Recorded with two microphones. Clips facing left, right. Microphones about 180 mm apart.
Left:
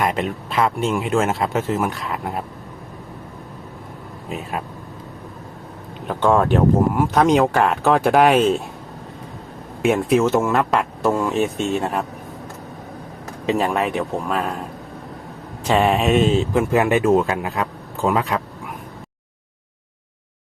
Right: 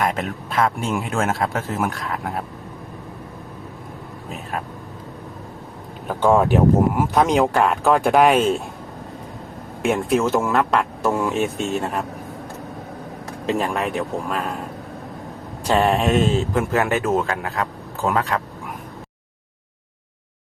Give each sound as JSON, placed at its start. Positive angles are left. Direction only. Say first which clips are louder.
{"t": 0.0, "sound": "speech", "louder": "left 2 dB", "side_deg": 0}
{"t": 6.1, "sound": "speech", "louder": "even", "side_deg": -5}
{"t": 9.8, "sound": "speech", "louder": "left 3 dB", "side_deg": 5}
{"t": 13.4, "sound": "speech", "louder": "left 2 dB", "side_deg": 0}
{"t": 15.6, "sound": "speech", "louder": "left 1 dB", "side_deg": 5}